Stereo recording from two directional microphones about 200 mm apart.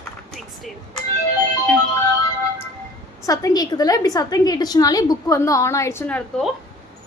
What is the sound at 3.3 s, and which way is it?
A woman's voice, 20° left (ahead or behind).